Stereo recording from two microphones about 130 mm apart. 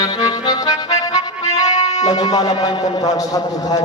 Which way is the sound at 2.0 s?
30° left (ahead or behind).